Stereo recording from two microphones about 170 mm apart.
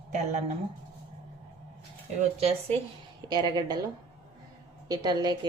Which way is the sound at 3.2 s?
25° right (ahead or behind).